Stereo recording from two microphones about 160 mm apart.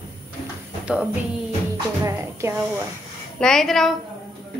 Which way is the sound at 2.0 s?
15° right (ahead or behind).